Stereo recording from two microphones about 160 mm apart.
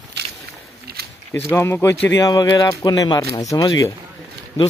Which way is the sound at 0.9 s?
75° right (ahead or behind).